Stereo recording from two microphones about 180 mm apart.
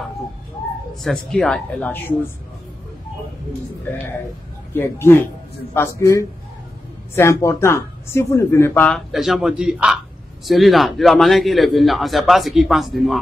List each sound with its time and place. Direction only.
1.0 s a man's voice: 5° left (ahead or behind)
4.7 s a man's voice: 15° left (ahead or behind)